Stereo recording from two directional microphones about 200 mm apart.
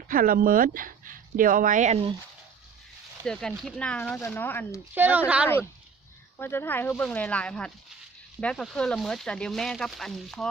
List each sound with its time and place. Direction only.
0.1 s speech: 45° right (ahead or behind)
3.2 s speech: centre (ahead or behind)
4.9 s speech: 10° right (ahead or behind)
6.3 s speech: 10° left (ahead or behind)